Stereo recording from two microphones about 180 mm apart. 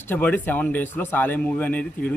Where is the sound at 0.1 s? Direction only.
10° left (ahead or behind).